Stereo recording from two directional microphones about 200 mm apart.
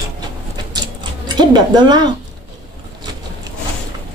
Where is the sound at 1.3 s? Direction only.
20° right (ahead or behind).